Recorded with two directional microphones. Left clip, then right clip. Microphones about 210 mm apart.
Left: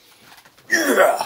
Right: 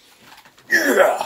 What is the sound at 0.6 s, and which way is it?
Gasp, 20° left (ahead or behind).